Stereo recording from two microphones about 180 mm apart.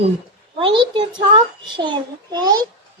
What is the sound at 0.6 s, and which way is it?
A child's voice, 30° right (ahead or behind).